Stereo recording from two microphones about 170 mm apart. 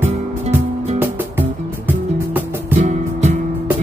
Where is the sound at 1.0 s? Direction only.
10° right (ahead or behind).